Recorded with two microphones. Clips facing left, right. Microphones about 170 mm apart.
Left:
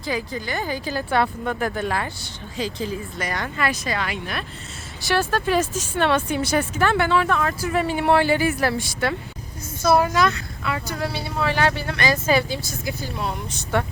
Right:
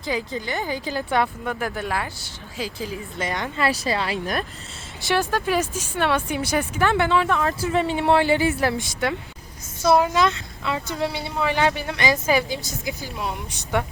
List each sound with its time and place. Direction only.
0.0 s speech: 20° right (ahead or behind)
3.2 s speech: 20° right (ahead or behind)
3.7 s speech: 30° right (ahead or behind)
5.0 s speech: 15° right (ahead or behind)